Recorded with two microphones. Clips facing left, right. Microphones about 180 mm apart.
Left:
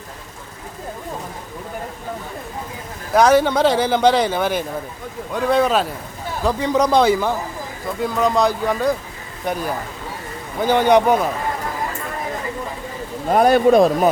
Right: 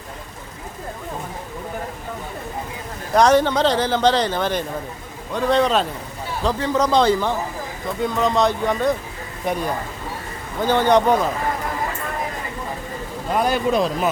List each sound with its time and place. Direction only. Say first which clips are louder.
3.1 s speech: left 1 dB; 5° left (ahead or behind)
10.6 s speech: left 2 dB; 10° left (ahead or behind)
13.3 s speech: left 7 dB; 50° left (ahead or behind)